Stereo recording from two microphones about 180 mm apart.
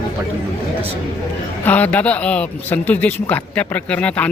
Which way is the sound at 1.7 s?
10° left (ahead or behind).